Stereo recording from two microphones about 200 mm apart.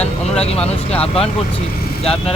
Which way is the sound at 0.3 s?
30° left (ahead or behind).